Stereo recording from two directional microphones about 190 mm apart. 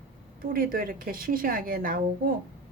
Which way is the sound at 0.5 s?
50° right (ahead or behind).